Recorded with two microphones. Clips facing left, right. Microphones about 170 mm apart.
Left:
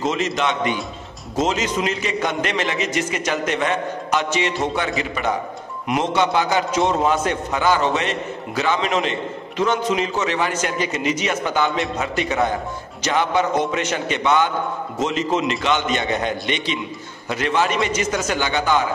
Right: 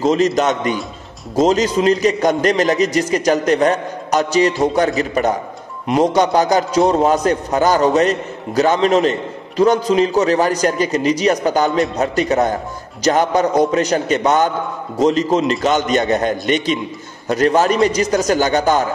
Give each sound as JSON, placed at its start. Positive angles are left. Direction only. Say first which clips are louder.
{"t": 0.0, "sound": "a man's voice", "louder": "right 7 dB", "side_deg": -40}